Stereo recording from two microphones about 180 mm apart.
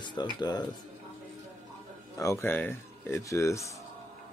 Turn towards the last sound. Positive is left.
turn(degrees=15)  # may be behind; listen again after turning